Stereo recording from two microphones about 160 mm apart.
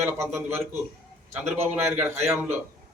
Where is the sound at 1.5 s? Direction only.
10° right (ahead or behind).